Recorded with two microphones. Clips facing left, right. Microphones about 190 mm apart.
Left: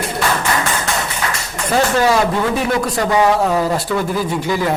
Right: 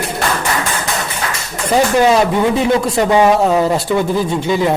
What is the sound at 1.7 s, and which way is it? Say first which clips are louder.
A man's voice: right 3 dB; 20° right (ahead or behind).